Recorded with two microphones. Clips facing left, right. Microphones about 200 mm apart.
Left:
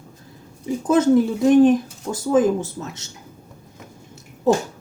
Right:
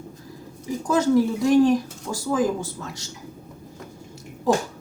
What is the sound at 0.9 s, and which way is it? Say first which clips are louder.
Speech: left 3 dB; 20° left (ahead or behind).